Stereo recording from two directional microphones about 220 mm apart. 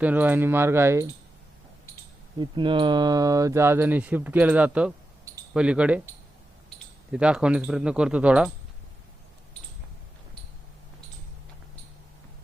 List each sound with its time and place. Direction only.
0.0 s speech: 10° right (ahead or behind)
2.4 s speech: 20° right (ahead or behind); by 6.0 s 5° right (ahead or behind)
7.1 s speech: 5° right (ahead or behind)